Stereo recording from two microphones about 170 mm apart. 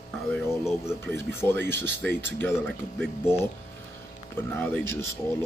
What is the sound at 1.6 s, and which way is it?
Speech, 90° right.